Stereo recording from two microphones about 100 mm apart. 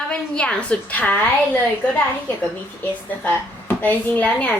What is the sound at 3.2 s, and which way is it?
Speech, 15° left (ahead or behind).